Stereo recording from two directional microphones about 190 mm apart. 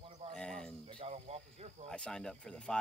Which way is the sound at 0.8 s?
30° right (ahead or behind).